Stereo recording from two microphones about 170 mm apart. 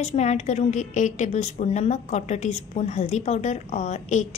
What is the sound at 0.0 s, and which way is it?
A woman's voice, 40° left (ahead or behind).